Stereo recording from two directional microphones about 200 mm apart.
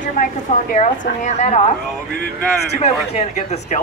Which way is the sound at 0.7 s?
35° left (ahead or behind).